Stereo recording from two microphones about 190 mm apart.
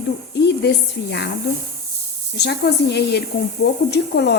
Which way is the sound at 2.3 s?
60° left (ahead or behind).